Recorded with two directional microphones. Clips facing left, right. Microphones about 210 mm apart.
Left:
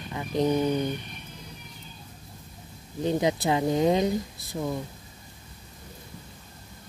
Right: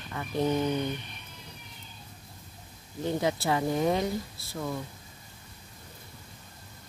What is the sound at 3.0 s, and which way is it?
Speech, 20° left (ahead or behind).